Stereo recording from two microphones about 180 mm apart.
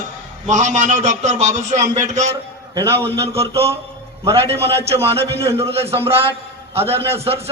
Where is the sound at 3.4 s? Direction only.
35° right (ahead or behind).